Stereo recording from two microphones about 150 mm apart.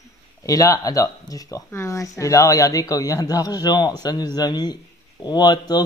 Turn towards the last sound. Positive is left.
turn(degrees=25)  # may be behind; listen again after turning